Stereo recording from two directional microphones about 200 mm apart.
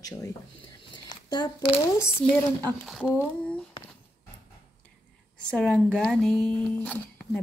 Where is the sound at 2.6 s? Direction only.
5° left (ahead or behind).